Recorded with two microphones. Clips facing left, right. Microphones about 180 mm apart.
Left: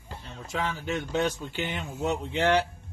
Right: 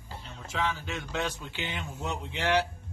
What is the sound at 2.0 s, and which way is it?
Speech, 55° left (ahead or behind).